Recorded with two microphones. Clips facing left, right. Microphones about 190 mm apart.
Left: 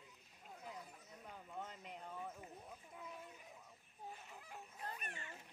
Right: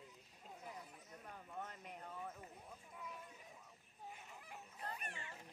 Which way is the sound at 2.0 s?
10° left (ahead or behind).